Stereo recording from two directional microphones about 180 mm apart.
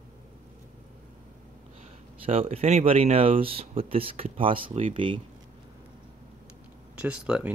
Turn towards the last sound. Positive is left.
turn(degrees=-5)  # may be behind; listen again after turning